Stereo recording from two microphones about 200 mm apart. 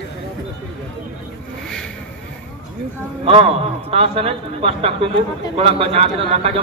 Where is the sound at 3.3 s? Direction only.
30° right (ahead or behind).